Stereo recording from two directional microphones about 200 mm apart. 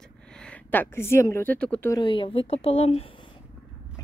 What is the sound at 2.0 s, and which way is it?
Speech, 25° left (ahead or behind).